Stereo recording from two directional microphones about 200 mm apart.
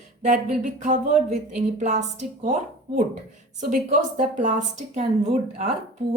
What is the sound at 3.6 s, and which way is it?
Speech, 35° right (ahead or behind).